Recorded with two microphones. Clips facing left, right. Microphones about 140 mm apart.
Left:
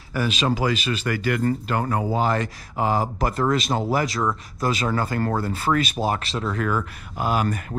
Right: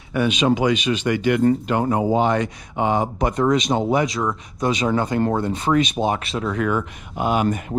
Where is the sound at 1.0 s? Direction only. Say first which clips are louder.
Right 6 dB; 25° right (ahead or behind).